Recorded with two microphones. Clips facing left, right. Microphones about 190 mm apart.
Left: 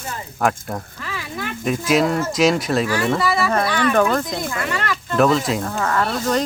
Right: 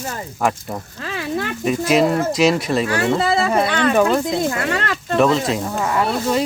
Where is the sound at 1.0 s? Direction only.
60° right (ahead or behind).